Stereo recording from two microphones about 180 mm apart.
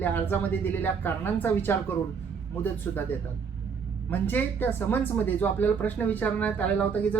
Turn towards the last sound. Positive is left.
turn(degrees=10)  # may be behind; listen again after turning